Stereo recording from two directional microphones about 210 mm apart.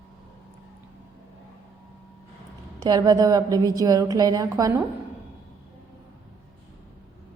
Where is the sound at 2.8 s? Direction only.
20° right (ahead or behind).